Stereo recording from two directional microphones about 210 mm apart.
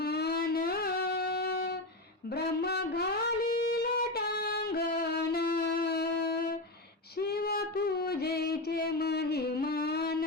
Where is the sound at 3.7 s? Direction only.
50° left (ahead or behind).